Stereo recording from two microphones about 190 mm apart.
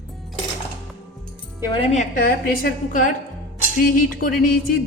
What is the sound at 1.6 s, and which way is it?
Speech, 25° left (ahead or behind).